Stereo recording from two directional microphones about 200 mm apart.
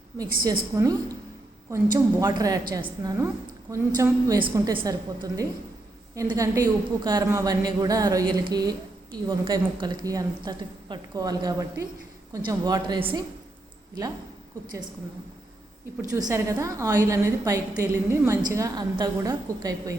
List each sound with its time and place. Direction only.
0.4 s a woman's voice: 20° right (ahead or behind)
16.0 s a woman's voice: 15° right (ahead or behind)